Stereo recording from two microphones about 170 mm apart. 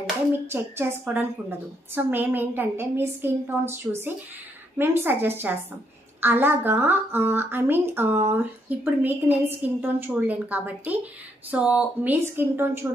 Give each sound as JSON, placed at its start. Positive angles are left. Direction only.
{"t": 0.5, "sound": "a woman's voice", "side_deg": -15}